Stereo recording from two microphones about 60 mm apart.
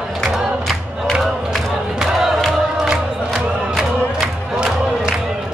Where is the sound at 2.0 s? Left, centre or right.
Centre.